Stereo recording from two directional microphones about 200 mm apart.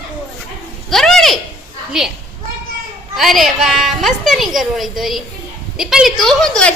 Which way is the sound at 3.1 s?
Centre (ahead or behind).